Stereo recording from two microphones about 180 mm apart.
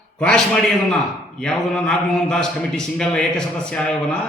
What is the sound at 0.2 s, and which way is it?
A man's voice, 5° left (ahead or behind).